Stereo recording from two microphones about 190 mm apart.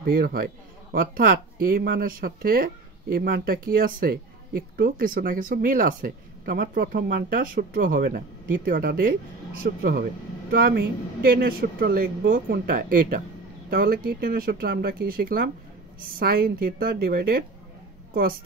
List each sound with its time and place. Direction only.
0.0 s speech: 50° right (ahead or behind)